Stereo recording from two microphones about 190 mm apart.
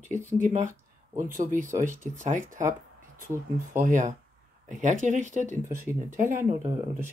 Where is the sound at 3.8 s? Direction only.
45° right (ahead or behind).